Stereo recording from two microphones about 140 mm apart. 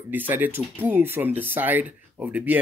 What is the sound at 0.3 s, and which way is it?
Speech, 15° right (ahead or behind).